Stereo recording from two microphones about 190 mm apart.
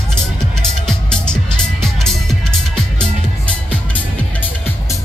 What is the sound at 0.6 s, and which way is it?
Music, 5° left (ahead or behind).